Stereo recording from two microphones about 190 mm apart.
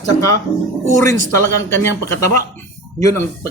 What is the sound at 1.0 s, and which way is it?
Speech, 15° left (ahead or behind).